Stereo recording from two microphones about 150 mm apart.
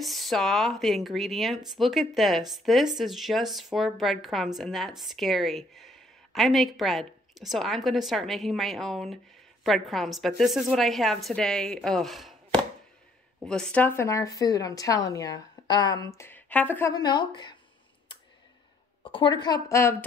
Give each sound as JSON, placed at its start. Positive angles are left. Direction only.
{"t": 0.0, "sound": "a woman's voice", "side_deg": 0}
{"t": 13.5, "sound": "speech", "side_deg": 5}
{"t": 16.2, "sound": "speech", "side_deg": 15}
{"t": 16.9, "sound": "speech", "side_deg": 30}
{"t": 19.0, "sound": "speech", "side_deg": 35}